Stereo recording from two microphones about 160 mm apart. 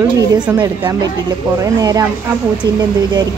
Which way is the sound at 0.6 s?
25° right (ahead or behind).